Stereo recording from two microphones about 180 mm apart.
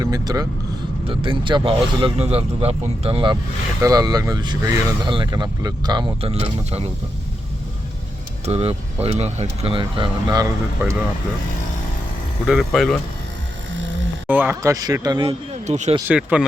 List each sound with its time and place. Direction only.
0.0 s speech: 20° right (ahead or behind)
8.4 s speech: 35° right (ahead or behind)
12.5 s speech: centre (ahead or behind)
14.3 s speech: 10° right (ahead or behind); by 16.0 s 40° right (ahead or behind)
16.0 s speech: 5° right (ahead or behind)